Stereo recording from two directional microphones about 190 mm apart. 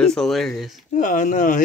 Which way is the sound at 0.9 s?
40° left (ahead or behind).